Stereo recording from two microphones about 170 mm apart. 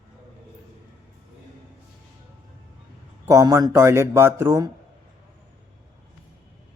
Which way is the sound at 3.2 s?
20° right (ahead or behind).